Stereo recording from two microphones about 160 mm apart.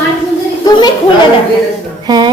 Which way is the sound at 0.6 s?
25° left (ahead or behind).